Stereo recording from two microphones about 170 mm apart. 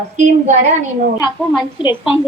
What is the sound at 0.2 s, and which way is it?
Speech, 45° right (ahead or behind).